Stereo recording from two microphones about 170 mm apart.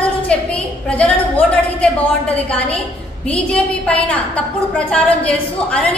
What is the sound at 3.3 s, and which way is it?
A woman's voice, 5° left (ahead or behind).